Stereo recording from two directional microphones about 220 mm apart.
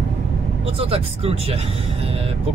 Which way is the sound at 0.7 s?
25° right (ahead or behind).